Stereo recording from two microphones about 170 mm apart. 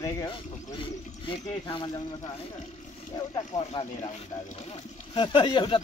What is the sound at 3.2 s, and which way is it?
Speech, 25° left (ahead or behind).